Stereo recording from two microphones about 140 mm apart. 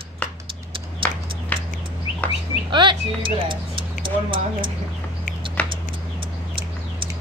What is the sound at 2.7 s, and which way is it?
Speech, 35° right (ahead or behind).